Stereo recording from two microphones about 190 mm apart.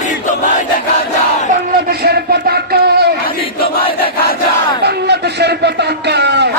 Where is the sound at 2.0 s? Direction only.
55° right (ahead or behind).